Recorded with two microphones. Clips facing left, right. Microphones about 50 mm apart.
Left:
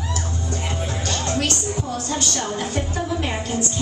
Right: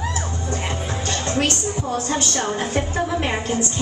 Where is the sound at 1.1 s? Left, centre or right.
Right.